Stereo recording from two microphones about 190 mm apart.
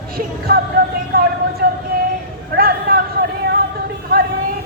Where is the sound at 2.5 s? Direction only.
55° right (ahead or behind).